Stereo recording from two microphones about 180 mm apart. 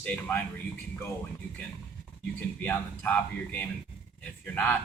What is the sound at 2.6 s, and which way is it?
Speech, 10° left (ahead or behind).